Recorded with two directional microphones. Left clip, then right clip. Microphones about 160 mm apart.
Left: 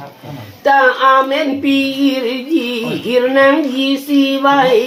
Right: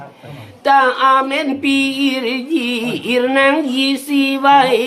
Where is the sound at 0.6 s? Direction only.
30° right (ahead or behind).